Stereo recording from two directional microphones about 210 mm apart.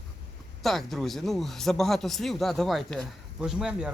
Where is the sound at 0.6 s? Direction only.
Centre (ahead or behind).